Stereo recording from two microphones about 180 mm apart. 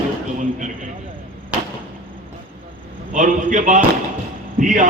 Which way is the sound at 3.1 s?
45° right (ahead or behind).